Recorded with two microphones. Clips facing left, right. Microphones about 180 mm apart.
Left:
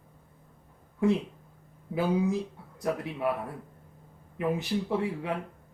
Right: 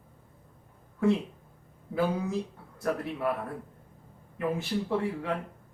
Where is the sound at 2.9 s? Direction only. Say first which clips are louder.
Even; 20° left (ahead or behind).